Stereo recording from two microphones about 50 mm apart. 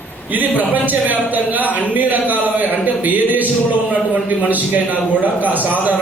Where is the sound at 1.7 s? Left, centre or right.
Left.